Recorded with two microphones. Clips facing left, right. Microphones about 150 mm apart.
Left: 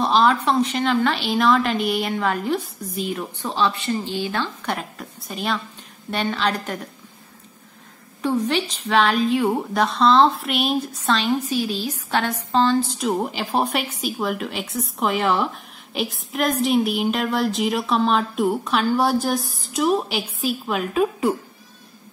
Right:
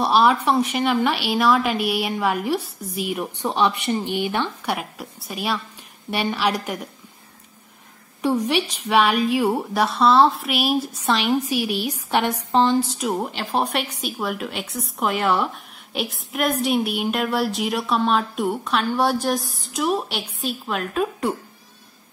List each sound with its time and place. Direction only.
0.0 s a woman's voice: 10° right (ahead or behind)
8.2 s a woman's voice: 10° right (ahead or behind)
12.9 s speech: centre (ahead or behind)